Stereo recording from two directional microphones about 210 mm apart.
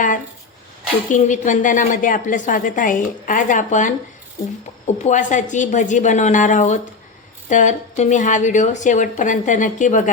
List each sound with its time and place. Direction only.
1.1 s a woman's voice: 35° left (ahead or behind)
5.0 s a woman's voice: 35° left (ahead or behind)